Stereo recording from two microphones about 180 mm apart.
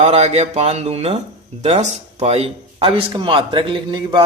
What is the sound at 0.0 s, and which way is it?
A man's voice, 35° right (ahead or behind).